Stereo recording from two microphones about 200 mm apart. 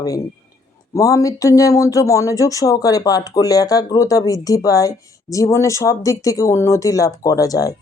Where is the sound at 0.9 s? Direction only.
15° left (ahead or behind).